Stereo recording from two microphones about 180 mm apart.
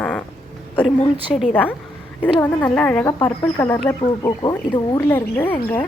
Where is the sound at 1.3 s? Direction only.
5° left (ahead or behind); by 5.1 s 25° left (ahead or behind).